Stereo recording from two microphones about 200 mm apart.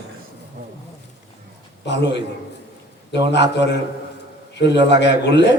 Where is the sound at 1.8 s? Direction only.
60° left (ahead or behind).